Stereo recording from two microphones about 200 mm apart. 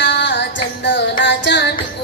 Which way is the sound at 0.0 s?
60° left (ahead or behind).